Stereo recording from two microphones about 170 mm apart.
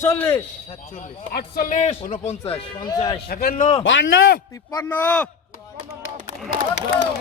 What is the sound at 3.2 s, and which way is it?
Speech, 60° left (ahead or behind).